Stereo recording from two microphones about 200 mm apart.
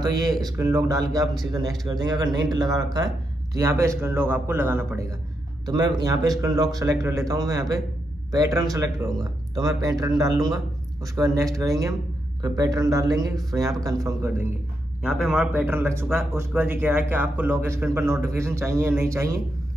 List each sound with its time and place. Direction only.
0.0 s a man's voice: 20° right (ahead or behind)
15.0 s a man's voice: 5° right (ahead or behind)